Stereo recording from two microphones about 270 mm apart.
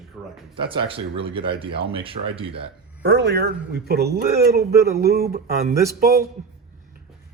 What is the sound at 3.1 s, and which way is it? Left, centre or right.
Speech, right.